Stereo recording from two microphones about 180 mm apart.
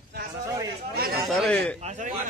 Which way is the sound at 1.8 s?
40° right (ahead or behind).